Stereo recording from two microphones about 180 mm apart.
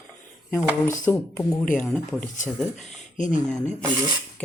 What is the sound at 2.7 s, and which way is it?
Speech, 40° left (ahead or behind).